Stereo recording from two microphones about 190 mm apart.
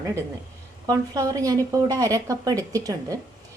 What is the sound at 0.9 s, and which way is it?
A woman's voice, 20° right (ahead or behind).